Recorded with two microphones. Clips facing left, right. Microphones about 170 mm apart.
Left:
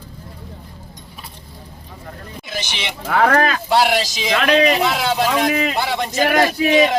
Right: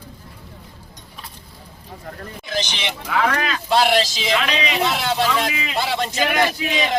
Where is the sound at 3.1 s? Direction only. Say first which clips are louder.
Left 6 dB; 50° left (ahead or behind).